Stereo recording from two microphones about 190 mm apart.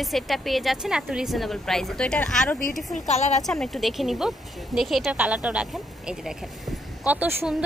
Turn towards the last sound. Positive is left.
turn(degrees=-10)  # may be behind; listen again after turning